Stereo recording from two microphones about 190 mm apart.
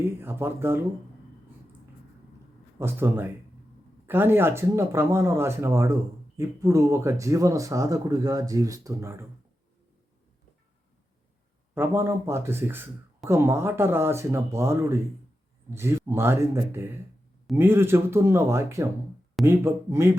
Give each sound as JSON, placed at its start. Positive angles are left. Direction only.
{"t": 0.0, "sound": "speech", "side_deg": -10}
{"t": 2.7, "sound": "speech", "side_deg": -10}
{"t": 11.7, "sound": "speech", "side_deg": -10}